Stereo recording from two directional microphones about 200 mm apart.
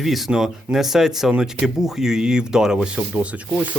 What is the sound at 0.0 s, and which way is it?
Speech, centre (ahead or behind).